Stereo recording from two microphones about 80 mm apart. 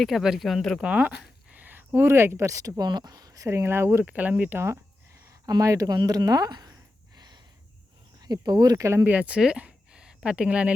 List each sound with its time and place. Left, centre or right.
0.0 s speech: centre
0.8 s speech: centre
4.0 s speech: centre
5.3 s speech: right
7.2 s a sound: right
8.2 s speech: right
9.0 s a sound: centre
10.2 s speech: centre